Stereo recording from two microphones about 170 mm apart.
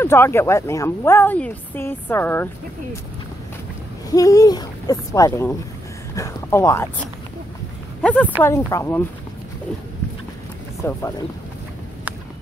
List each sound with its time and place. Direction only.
0.0 s speech: 15° left (ahead or behind)
4.1 s speech: 20° left (ahead or behind)
8.0 s speech: 10° left (ahead or behind)
10.8 s speech: 15° left (ahead or behind)